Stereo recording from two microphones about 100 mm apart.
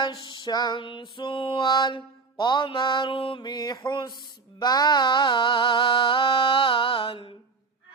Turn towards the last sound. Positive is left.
turn(degrees=60)  # may be behind; listen again after turning